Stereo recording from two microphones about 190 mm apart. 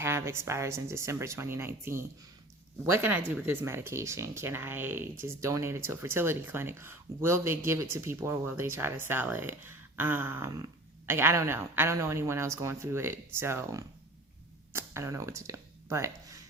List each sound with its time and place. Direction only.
0.0 s speech: 15° right (ahead or behind)